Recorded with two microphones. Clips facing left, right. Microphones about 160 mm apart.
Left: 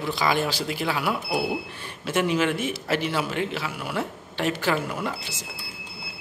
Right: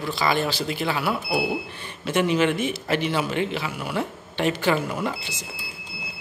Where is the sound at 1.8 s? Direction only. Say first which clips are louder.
Right 2 dB; 5° left (ahead or behind).